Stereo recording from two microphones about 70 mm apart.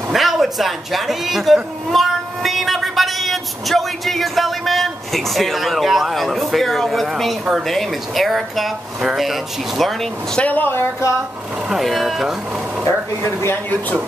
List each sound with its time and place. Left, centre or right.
0.1 s a woman's voice: centre
10.4 s speech: left
11.7 s speech: centre
12.8 s speech: left